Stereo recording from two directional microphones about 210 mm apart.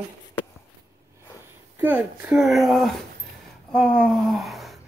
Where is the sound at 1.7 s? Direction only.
10° right (ahead or behind).